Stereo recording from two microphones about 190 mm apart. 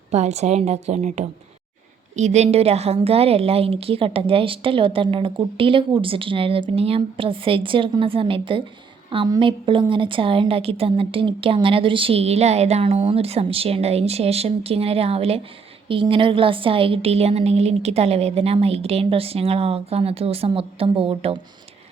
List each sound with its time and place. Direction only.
0.1 s a woman's voice: 35° right (ahead or behind)